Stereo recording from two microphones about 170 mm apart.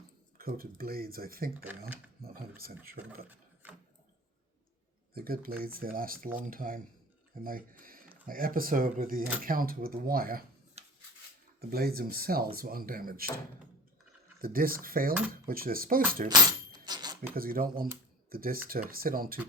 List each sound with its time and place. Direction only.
0.3 s speech: 60° right (ahead or behind)
3.2 s sewing machine: 10° right (ahead or behind)
5.1 s speech: 60° right (ahead or behind)
11.7 s speech: 65° right (ahead or behind)
14.4 s speech: 60° right (ahead or behind)
16.5 s a sound: 25° right (ahead or behind)
17.3 s speech: 60° right (ahead or behind)